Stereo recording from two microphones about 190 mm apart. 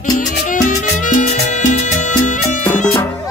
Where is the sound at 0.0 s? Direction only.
45° left (ahead or behind).